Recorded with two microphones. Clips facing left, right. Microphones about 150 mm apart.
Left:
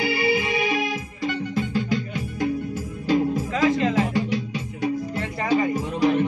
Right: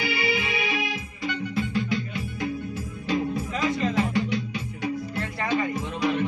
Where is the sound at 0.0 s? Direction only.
45° left (ahead or behind).